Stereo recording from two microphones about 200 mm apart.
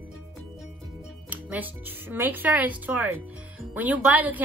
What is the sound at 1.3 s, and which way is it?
Speech, 10° right (ahead or behind).